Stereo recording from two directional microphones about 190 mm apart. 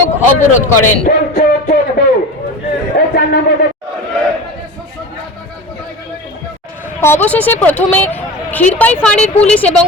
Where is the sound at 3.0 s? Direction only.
50° left (ahead or behind).